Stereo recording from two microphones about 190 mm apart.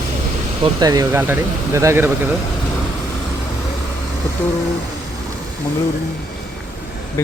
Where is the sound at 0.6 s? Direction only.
20° right (ahead or behind).